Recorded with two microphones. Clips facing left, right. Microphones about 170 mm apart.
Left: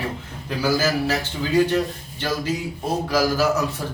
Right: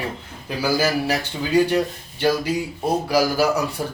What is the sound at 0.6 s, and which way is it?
Speech, 15° right (ahead or behind).